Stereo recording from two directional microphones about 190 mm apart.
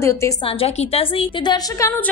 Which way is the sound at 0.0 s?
15° left (ahead or behind).